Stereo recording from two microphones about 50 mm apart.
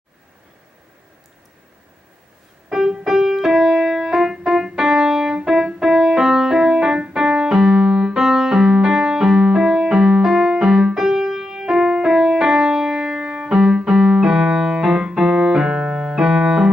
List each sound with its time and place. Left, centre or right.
2.7 s music: centre
4.5 s keyboard: centre
5.8 s music: centre
10.2 s music: centre
10.6 s music: centre
14.3 s keyboard: centre
15.7 s keyboard: centre